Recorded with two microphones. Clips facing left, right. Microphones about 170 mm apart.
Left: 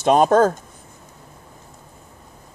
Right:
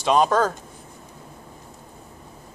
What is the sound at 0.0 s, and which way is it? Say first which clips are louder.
Speech: left 5 dB; 50° left (ahead or behind).